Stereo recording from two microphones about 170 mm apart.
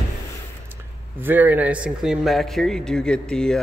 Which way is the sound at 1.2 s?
10° right (ahead or behind).